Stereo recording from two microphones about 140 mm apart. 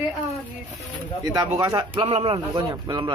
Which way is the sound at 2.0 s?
40° right (ahead or behind).